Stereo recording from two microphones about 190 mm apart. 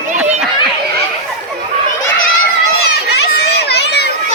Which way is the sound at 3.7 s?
60° left (ahead or behind).